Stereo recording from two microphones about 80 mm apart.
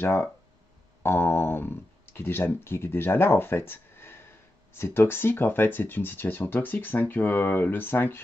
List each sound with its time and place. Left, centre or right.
0.0 s speech: left